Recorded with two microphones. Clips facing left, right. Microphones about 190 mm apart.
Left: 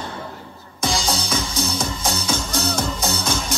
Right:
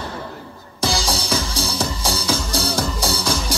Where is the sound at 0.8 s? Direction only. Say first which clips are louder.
Right 1 dB; 30° right (ahead or behind).